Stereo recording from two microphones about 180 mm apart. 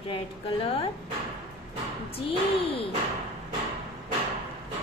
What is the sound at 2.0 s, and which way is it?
Speech, 30° left (ahead or behind).